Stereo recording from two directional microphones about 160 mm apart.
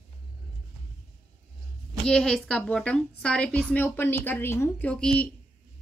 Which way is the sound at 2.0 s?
5° left (ahead or behind).